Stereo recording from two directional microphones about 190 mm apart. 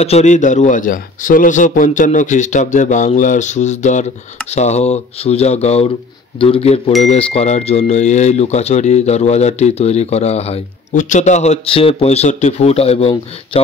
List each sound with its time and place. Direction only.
0.0 s speech: 35° left (ahead or behind)